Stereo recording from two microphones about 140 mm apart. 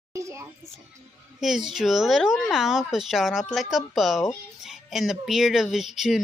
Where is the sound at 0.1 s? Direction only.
20° right (ahead or behind).